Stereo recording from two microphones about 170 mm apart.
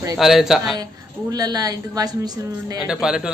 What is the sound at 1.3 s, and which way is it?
Speech, 20° right (ahead or behind).